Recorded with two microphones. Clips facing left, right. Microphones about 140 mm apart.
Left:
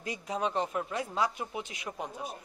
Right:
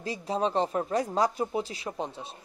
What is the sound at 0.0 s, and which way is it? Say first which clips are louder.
Speech: right 4 dB; 30° right (ahead or behind).